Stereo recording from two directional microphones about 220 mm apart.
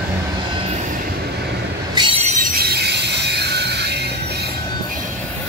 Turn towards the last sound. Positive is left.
turn(degrees=-50)  # may be behind; listen again after turning